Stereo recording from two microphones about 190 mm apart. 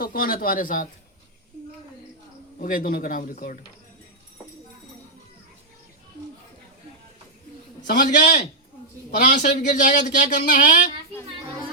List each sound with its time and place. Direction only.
0.0 s speech: 50° left (ahead or behind)
2.6 s speech: 45° left (ahead or behind)
7.9 s speech: 40° left (ahead or behind)